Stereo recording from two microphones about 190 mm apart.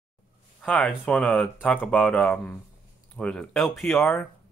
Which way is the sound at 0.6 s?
5° left (ahead or behind).